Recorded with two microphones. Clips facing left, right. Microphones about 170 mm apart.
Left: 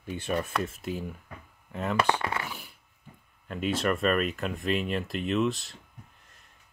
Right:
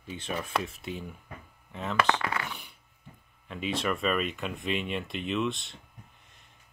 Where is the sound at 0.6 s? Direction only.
Centre (ahead or behind).